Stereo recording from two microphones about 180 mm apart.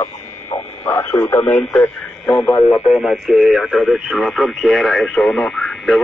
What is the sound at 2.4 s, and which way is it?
Speech, 30° left (ahead or behind).